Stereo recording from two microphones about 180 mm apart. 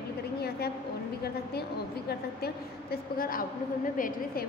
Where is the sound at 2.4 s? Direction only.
55° left (ahead or behind).